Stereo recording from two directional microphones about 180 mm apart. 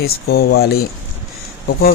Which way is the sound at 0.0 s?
60° left (ahead or behind).